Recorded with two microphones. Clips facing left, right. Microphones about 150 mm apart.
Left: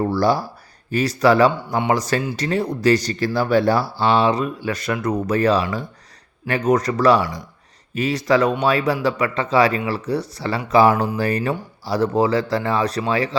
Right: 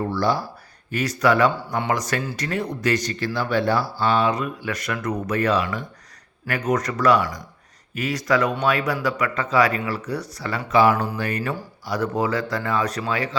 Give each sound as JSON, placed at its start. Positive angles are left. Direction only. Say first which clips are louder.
{"t": 0.0, "sound": "speech", "louder": "left 4 dB", "side_deg": 35}